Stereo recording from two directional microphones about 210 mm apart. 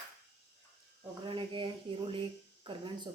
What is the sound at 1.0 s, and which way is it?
Speech, 25° right (ahead or behind).